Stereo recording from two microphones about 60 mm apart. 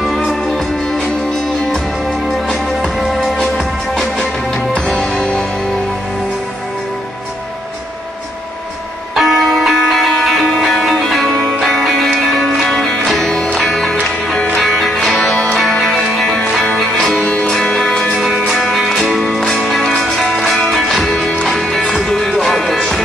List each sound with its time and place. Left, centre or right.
0.0 s music: centre
2.2 s music: centre
9.1 s music: centre
17.2 s music: left
17.7 s music: centre